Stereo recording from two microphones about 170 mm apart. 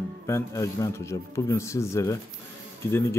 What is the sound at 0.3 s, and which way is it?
Speech, 15° left (ahead or behind).